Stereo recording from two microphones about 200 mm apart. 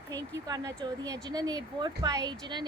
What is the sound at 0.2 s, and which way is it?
Speech, 20° right (ahead or behind).